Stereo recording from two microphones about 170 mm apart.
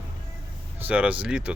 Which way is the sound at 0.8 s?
10° right (ahead or behind).